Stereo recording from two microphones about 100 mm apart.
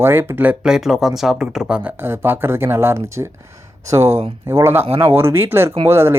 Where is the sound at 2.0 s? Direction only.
25° right (ahead or behind).